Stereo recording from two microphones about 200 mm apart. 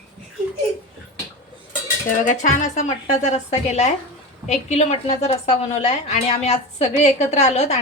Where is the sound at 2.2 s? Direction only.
40° left (ahead or behind).